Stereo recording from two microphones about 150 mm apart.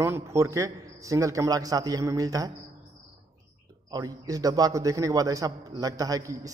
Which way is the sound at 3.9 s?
25° right (ahead or behind).